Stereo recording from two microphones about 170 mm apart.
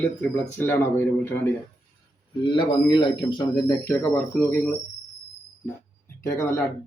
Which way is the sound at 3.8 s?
10° left (ahead or behind).